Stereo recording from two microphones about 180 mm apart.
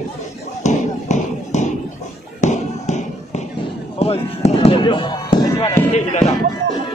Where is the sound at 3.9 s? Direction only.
35° left (ahead or behind).